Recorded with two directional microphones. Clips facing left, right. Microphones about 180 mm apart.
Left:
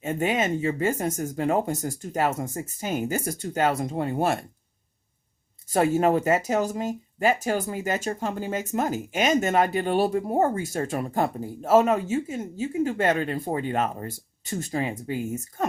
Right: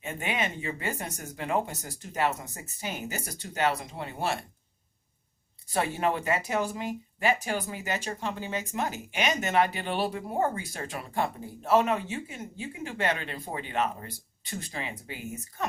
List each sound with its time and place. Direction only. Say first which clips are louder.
0.0 s speech: left 7 dB; 45° left (ahead or behind)
5.6 s speech: left 7 dB; 45° left (ahead or behind)